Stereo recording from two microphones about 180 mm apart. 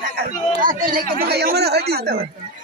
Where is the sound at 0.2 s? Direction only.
50° right (ahead or behind).